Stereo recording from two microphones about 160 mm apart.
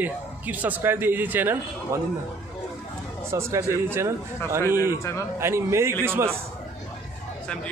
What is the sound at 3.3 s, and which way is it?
Speech, 20° right (ahead or behind).